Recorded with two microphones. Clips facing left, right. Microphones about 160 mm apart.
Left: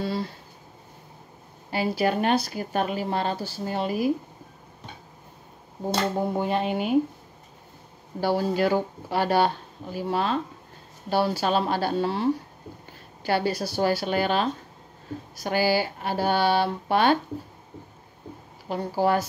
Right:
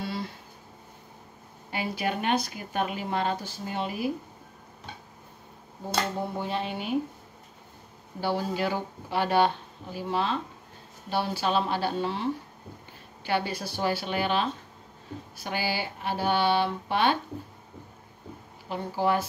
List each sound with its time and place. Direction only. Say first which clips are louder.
0.0 s a sound: left 5 dB; 35° left (ahead or behind)
1.7 s speech: left 6 dB; 35° left (ahead or behind)
6.3 s speech: left 6 dB; 50° left (ahead or behind)
8.2 s speech: left 5 dB; 40° left (ahead or behind)
18.7 s speech: left 3 dB; 40° left (ahead or behind)